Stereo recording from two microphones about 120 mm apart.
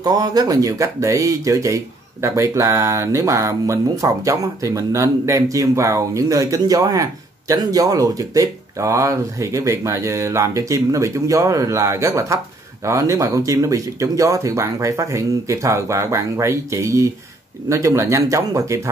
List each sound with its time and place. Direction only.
0.0 s speech: 35° right (ahead or behind)